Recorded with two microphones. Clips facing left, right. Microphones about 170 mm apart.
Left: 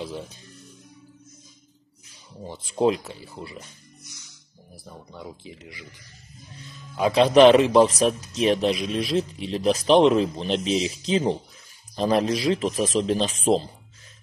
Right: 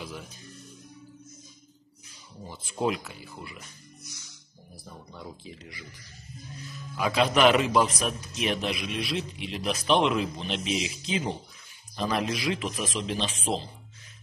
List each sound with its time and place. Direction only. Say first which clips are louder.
2.4 s a man's voice: left 7 dB; 30° left (ahead or behind)
4.8 s speech: left 3 dB; 15° left (ahead or behind)
6.6 s a man's voice: left 6 dB; 30° left (ahead or behind)